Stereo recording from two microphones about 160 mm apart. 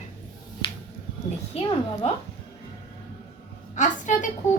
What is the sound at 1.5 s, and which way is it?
Speech, 40° left (ahead or behind).